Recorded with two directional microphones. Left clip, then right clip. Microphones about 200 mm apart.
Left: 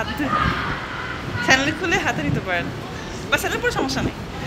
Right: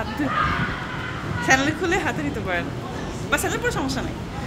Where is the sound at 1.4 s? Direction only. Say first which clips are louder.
Left 1 dB; 15° right (ahead or behind).